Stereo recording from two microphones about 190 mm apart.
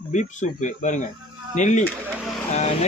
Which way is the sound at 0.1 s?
40° left (ahead or behind).